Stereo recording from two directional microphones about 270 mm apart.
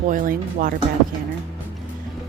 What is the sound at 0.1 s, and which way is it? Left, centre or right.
Speech, right.